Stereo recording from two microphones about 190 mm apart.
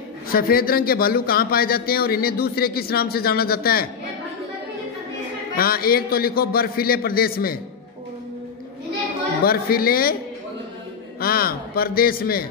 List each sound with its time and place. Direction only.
0.3 s a man's voice: 50° left (ahead or behind)
5.6 s a man's voice: 50° left (ahead or behind)
9.4 s a man's voice: 50° left (ahead or behind)
11.1 s a man's voice: 50° left (ahead or behind)